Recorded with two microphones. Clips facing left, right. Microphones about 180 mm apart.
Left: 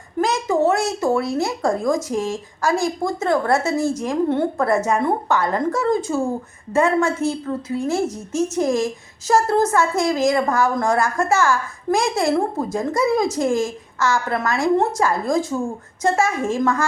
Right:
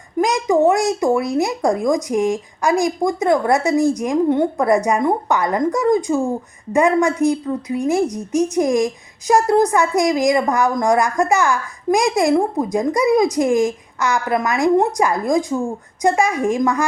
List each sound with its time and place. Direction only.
0.2 s a woman's voice: 15° right (ahead or behind)